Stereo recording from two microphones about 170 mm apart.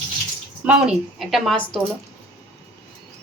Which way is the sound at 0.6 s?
5° right (ahead or behind).